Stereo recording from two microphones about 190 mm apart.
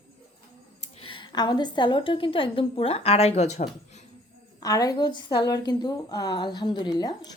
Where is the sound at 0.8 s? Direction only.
25° left (ahead or behind).